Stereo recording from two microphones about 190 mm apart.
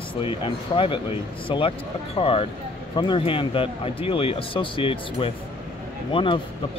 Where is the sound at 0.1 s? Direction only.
30° left (ahead or behind).